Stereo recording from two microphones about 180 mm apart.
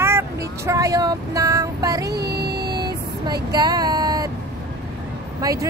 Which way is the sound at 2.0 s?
65° right (ahead or behind).